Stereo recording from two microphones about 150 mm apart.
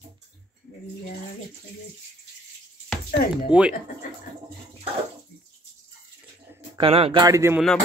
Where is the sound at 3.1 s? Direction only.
90° left.